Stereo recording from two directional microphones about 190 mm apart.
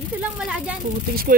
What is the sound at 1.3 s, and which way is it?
Speech, 45° right (ahead or behind).